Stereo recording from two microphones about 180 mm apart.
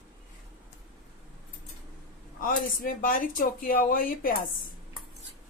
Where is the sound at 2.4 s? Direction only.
50° left (ahead or behind).